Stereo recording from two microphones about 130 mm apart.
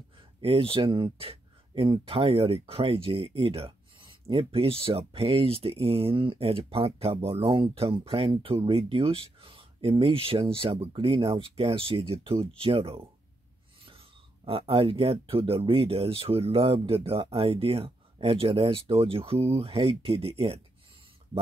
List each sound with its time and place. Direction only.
0.4 s speech: 45° right (ahead or behind)